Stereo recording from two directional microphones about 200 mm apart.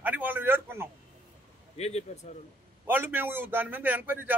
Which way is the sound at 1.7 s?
30° left (ahead or behind).